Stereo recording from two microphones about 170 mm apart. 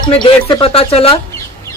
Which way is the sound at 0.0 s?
30° left (ahead or behind).